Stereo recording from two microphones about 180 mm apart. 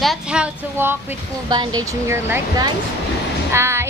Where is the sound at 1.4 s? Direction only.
20° right (ahead or behind).